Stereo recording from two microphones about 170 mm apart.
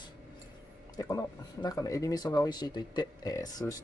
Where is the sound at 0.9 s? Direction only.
20° left (ahead or behind).